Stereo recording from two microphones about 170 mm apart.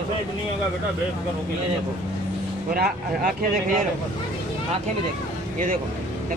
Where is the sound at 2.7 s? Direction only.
60° right (ahead or behind).